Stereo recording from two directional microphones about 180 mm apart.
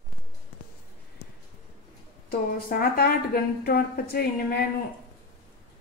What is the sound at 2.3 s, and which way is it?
A woman's voice, 55° left (ahead or behind).